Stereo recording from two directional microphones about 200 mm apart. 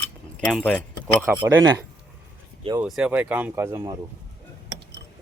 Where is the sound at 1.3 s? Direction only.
5° right (ahead or behind).